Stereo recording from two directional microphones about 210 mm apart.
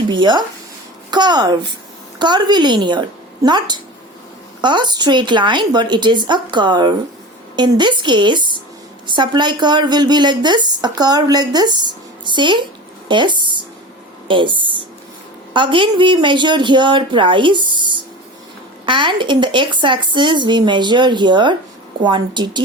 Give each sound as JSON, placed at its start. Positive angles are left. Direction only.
{"t": 0.1, "sound": "a woman's voice", "side_deg": -20}
{"t": 13.1, "sound": "a sound", "side_deg": -20}
{"t": 14.3, "sound": "a woman's voice", "side_deg": -25}